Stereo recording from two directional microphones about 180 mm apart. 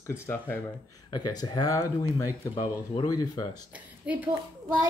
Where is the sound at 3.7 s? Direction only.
10° right (ahead or behind).